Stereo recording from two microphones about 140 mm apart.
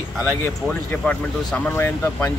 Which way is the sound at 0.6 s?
5° left (ahead or behind).